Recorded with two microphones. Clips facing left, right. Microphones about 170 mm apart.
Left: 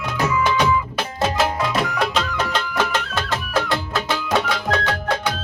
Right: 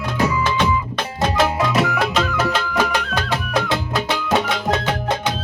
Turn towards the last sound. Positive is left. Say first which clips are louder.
# right 1 dB
turn(degrees=-20)  # may be behind; listen again after turning